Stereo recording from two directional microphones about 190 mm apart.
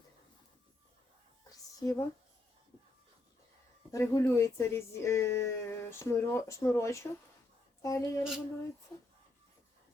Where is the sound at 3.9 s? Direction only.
15° left (ahead or behind).